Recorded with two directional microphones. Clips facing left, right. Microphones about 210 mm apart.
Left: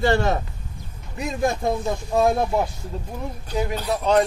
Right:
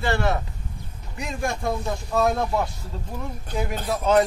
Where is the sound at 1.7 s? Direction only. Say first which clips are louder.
Left 3 dB; 15° left (ahead or behind).